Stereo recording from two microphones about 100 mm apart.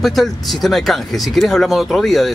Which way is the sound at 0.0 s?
Centre (ahead or behind).